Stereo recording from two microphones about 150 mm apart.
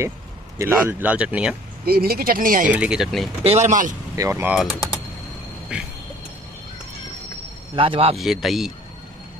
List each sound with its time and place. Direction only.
0.6 s speech: 15° right (ahead or behind)
1.9 s speech: 90° right; by 2.7 s 70° right (ahead or behind)
2.7 s speech: 5° right (ahead or behind)
3.4 s speech: 50° right (ahead or behind)
4.1 s speech: 15° right (ahead or behind)
4.6 s speech: 5° right (ahead or behind)
7.7 s speech: 35° right (ahead or behind)
8.2 s speech: centre (ahead or behind)